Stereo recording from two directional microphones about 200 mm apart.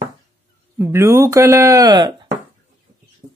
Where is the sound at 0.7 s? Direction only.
10° right (ahead or behind).